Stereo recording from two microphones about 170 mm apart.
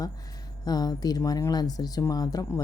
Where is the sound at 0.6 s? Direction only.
25° left (ahead or behind).